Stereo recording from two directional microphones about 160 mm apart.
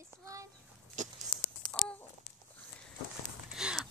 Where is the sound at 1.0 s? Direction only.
50° right (ahead or behind).